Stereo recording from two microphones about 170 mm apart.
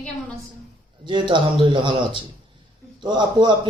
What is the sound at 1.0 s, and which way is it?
Speech, 25° right (ahead or behind).